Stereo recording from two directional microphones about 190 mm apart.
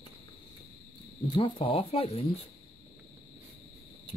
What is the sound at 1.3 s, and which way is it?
Speech, 30° left (ahead or behind).